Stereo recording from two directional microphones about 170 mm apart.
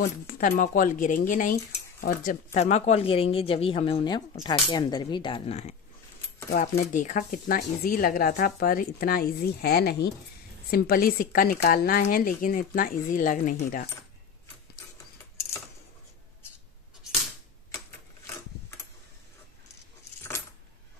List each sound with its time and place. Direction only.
0.0 s speech: 55° left (ahead or behind); by 5.8 s 40° left (ahead or behind)
6.8 s speech: 45° left (ahead or behind); by 10.1 s 75° left (ahead or behind)
10.7 s speech: 60° left (ahead or behind)